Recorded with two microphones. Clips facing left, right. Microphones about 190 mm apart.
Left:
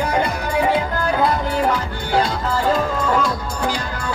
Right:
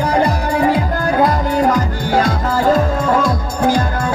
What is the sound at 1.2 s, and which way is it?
Music, 40° right (ahead or behind).